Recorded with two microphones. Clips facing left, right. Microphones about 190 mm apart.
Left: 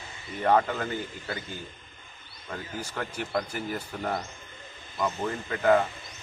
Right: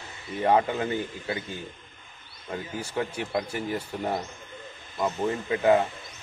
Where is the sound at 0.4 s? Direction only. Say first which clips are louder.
Right 1 dB; 15° right (ahead or behind).